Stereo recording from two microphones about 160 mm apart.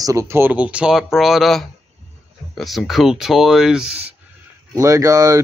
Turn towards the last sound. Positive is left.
turn(degrees=-20)  # may be behind; listen again after turning